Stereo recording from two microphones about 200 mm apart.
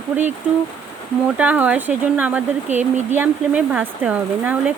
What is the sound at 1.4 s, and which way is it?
Speech, 10° right (ahead or behind).